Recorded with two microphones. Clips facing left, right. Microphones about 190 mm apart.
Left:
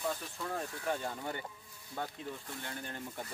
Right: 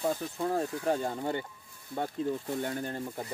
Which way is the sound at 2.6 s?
40° right (ahead or behind).